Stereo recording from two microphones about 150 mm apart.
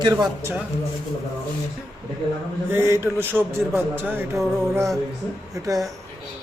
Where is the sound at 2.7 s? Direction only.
15° right (ahead or behind).